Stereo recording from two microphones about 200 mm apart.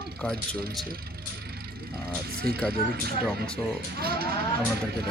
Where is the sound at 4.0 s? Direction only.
50° right (ahead or behind).